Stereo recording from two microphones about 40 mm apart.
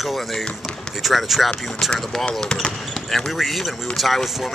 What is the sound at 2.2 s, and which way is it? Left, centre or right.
Speech, centre.